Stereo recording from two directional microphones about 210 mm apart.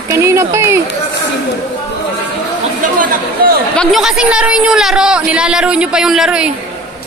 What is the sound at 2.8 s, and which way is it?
Chatter, 40° right (ahead or behind).